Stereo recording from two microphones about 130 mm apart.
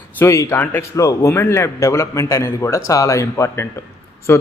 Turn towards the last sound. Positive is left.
turn(degrees=20)  # may be behind; listen again after turning